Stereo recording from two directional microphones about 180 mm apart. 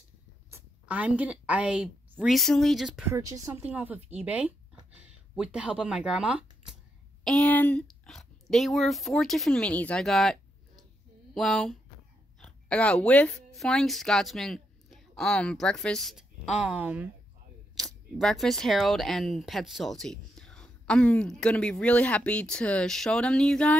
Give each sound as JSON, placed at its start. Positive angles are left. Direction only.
{"t": 0.5, "sound": "a woman's voice", "side_deg": -10}
{"t": 3.1, "sound": "speech", "side_deg": -15}
{"t": 7.2, "sound": "speech", "side_deg": 5}